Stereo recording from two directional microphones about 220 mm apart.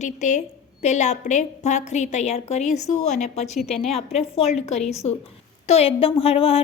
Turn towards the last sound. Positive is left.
turn(degrees=25)  # may be behind; listen again after turning